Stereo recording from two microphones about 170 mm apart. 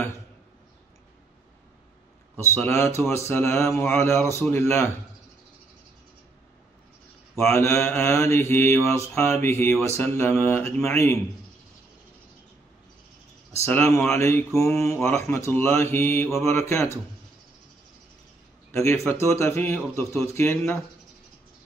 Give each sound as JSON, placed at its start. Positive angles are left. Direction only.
{"t": 2.3, "sound": "speech", "side_deg": 15}
{"t": 7.4, "sound": "speech", "side_deg": 15}
{"t": 13.7, "sound": "speech", "side_deg": 15}
{"t": 18.7, "sound": "speech", "side_deg": 15}